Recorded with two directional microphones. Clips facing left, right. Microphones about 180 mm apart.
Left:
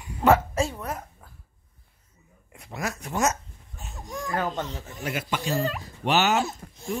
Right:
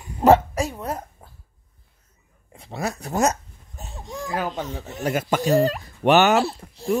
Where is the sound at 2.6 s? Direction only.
30° right (ahead or behind).